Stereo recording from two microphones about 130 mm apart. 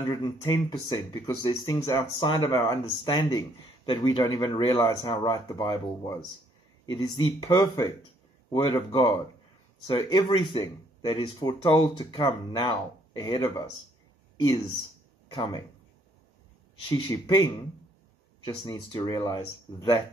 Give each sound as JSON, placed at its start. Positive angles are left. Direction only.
{"t": 0.5, "sound": "speech", "side_deg": 40}
{"t": 8.9, "sound": "speech", "side_deg": 35}
{"t": 16.9, "sound": "speech", "side_deg": 30}